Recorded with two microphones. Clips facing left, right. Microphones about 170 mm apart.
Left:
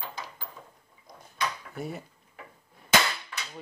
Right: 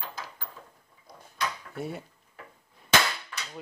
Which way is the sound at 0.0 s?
10° left (ahead or behind).